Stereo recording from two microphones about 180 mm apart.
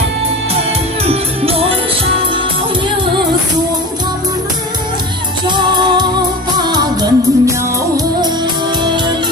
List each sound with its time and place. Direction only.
1.0 s music: 30° right (ahead or behind)
5.5 s music: 25° right (ahead or behind)
8.8 s music: 25° right (ahead or behind)